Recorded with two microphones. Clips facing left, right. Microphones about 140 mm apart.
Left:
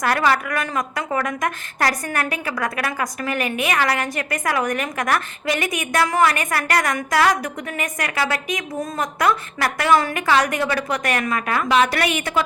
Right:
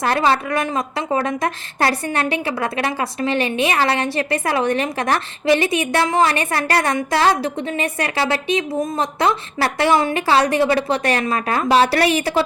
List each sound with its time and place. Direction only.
0.0 s a woman's voice: 25° right (ahead or behind)